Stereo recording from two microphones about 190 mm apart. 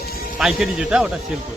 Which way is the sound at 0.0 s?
55° left (ahead or behind).